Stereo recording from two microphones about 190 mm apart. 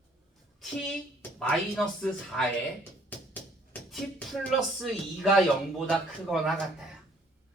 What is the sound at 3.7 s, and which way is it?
Speech, 5° left (ahead or behind).